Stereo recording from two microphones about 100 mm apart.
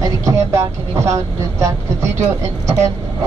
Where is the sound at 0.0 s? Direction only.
35° right (ahead or behind).